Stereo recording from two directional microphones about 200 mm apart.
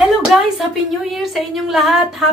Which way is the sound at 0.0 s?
Centre (ahead or behind).